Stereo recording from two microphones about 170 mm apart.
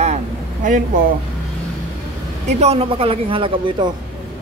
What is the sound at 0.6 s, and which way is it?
Speech, 50° right (ahead or behind).